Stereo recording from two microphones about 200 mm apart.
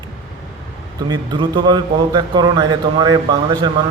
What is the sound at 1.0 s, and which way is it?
Speech, 20° right (ahead or behind).